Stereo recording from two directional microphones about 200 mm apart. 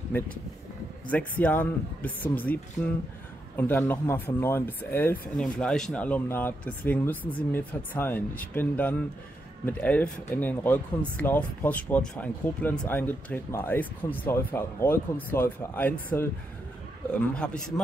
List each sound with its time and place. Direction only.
1.1 s a man's voice: 5° left (ahead or behind)